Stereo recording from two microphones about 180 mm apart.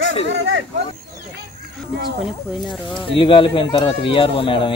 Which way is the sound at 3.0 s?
30° left (ahead or behind).